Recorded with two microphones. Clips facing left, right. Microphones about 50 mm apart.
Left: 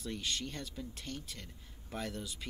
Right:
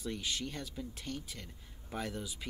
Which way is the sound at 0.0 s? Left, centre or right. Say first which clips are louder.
Right 1 dB; centre.